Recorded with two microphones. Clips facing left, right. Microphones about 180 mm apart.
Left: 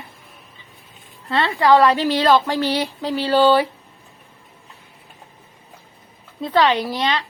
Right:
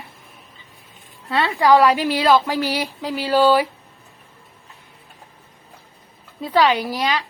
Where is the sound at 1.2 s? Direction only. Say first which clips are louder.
Even; 5° right (ahead or behind).